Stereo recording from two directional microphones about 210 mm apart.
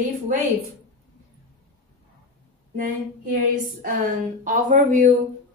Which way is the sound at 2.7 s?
40° right (ahead or behind).